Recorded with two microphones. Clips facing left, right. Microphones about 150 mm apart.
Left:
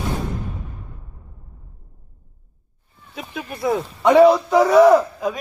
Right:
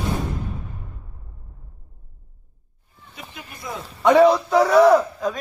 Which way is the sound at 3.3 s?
85° left.